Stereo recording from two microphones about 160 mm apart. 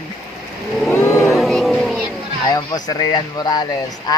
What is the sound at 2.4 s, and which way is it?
Speech, 25° left (ahead or behind).